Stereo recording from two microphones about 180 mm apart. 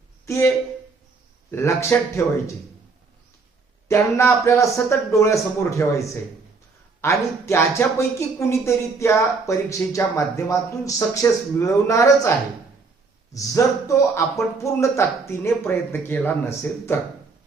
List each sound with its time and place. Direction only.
0.3 s speech: 15° left (ahead or behind)
3.8 s speech: 15° left (ahead or behind)
7.0 s speech: 15° left (ahead or behind)
13.3 s speech: 15° left (ahead or behind)